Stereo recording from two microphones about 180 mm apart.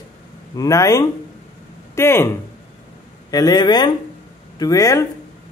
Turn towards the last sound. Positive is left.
turn(degrees=20)  # may be behind; listen again after turning